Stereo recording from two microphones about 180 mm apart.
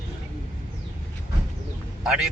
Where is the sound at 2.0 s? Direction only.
5° right (ahead or behind).